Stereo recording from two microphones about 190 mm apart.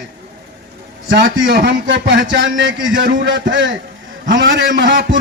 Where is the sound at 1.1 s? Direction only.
65° right (ahead or behind).